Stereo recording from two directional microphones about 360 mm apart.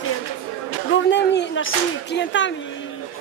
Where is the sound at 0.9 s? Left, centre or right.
Left.